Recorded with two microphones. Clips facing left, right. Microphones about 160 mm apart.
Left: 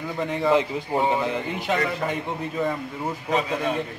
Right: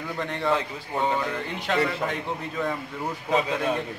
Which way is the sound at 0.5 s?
20° left (ahead or behind).